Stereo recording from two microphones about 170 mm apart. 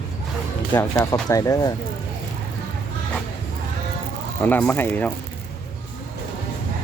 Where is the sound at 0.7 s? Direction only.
20° left (ahead or behind).